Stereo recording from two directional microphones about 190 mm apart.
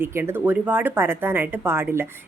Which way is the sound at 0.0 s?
15° right (ahead or behind).